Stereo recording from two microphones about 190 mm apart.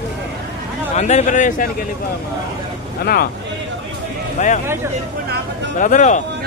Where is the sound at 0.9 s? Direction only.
35° left (ahead or behind).